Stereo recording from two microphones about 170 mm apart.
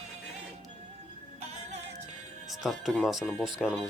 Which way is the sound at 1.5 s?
40° right (ahead or behind).